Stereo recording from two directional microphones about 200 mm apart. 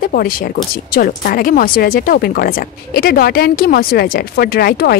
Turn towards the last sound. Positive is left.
turn(degrees=50)  # may be behind; listen again after turning